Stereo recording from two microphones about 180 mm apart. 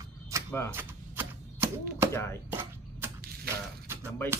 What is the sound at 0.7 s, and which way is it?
Chopping, 10° right (ahead or behind).